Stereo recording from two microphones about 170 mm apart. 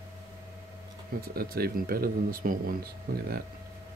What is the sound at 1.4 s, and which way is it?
A man's voice, 65° right (ahead or behind).